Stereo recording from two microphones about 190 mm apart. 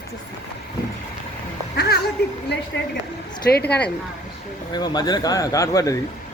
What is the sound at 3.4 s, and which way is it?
Speech, 55° left (ahead or behind).